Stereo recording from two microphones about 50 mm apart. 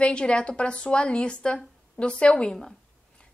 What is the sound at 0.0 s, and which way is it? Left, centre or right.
A woman's voice, left.